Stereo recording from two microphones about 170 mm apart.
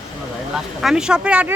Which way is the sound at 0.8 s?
5° right (ahead or behind).